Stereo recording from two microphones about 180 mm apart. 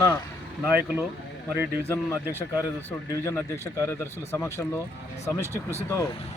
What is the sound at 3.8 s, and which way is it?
Speech, 15° left (ahead or behind).